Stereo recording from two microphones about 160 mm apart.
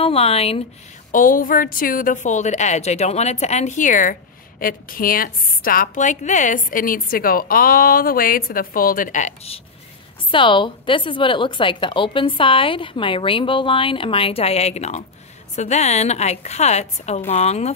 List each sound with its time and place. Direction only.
0.0 s a woman's voice: 35° left (ahead or behind)
1.1 s a woman's voice: 60° left (ahead or behind)
10.3 s a woman's voice: 30° left (ahead or behind)